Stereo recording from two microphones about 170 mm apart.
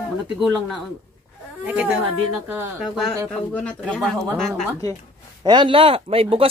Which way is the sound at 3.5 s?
5° left (ahead or behind).